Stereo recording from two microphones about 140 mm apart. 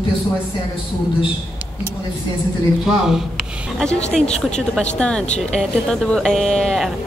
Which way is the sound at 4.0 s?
50° left (ahead or behind).